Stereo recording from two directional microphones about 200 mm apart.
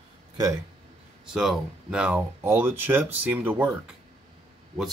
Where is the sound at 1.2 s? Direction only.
Centre (ahead or behind).